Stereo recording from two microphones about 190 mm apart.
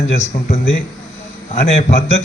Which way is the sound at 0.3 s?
45° left (ahead or behind).